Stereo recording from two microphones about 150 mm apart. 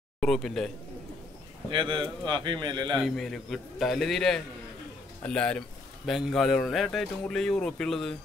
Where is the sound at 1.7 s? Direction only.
35° right (ahead or behind).